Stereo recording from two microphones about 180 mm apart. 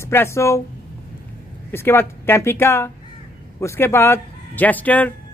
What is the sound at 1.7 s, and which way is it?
Speech, 15° left (ahead or behind).